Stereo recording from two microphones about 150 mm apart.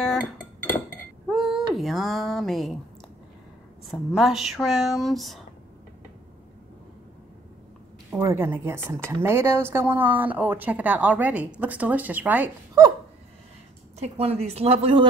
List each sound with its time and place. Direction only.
0.0 s dishes: 5° left (ahead or behind)
1.3 s a sound: centre (ahead or behind)
3.8 s speech: centre (ahead or behind)
8.1 s speech: 20° right (ahead or behind)
13.9 s speech: 45° right (ahead or behind)